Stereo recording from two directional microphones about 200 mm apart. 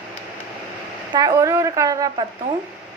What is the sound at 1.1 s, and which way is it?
A woman's voice, 15° right (ahead or behind).